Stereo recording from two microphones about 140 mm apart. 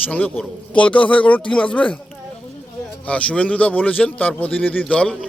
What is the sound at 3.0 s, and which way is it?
A man's voice, 10° left (ahead or behind).